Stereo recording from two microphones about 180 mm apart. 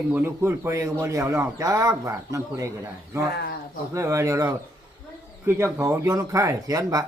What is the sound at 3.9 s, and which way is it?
Speech, 15° right (ahead or behind).